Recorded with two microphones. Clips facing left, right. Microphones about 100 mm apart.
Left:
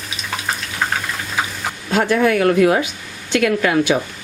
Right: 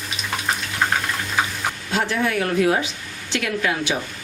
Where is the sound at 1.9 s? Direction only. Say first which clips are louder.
Left 8 dB; 50° left (ahead or behind).